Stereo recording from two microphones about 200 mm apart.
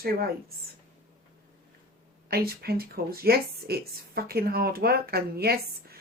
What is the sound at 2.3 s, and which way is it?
Speech, 50° right (ahead or behind).